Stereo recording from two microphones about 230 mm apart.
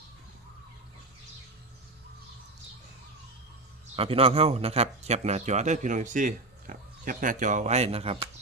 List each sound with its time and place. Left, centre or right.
3.9 s speech: right